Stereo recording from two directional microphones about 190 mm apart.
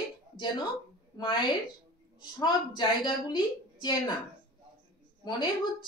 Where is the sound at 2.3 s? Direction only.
25° left (ahead or behind).